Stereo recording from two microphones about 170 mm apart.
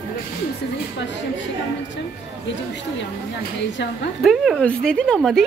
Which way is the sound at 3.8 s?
90° left.